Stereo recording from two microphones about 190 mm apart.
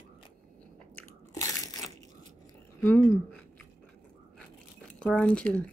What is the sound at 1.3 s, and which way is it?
Crunch, 15° left (ahead or behind).